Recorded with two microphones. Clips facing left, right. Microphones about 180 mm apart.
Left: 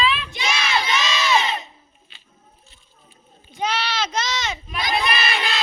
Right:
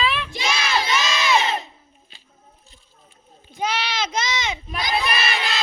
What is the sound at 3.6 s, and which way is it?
Speech, 10° right (ahead or behind).